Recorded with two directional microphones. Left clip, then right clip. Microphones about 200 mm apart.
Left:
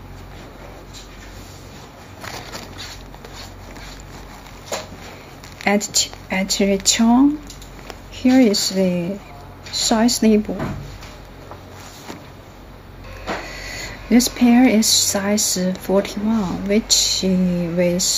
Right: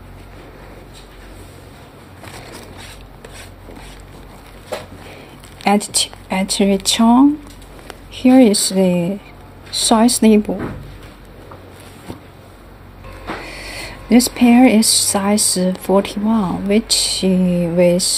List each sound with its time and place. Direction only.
5.6 s speech: 25° right (ahead or behind)
13.5 s speech: 25° right (ahead or behind)